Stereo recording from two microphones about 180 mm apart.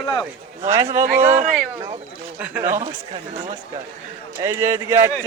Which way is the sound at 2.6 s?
40° right (ahead or behind).